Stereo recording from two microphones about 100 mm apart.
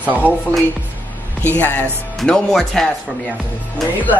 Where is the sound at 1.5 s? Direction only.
15° left (ahead or behind).